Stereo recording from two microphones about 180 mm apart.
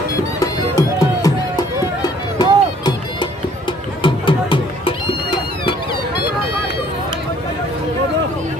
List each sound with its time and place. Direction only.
0.3 s music: 20° left (ahead or behind)